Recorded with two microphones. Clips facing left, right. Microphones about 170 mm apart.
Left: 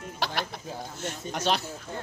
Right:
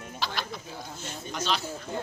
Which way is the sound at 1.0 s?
65° left (ahead or behind).